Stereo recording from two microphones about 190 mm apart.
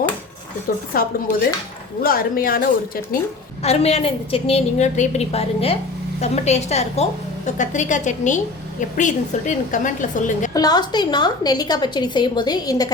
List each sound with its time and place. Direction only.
0.7 s a woman's voice: 50° left (ahead or behind)
2.0 s a woman's voice: 50° left (ahead or behind)
3.6 s a woman's voice: 35° left (ahead or behind)
10.5 s a woman's voice: 20° left (ahead or behind)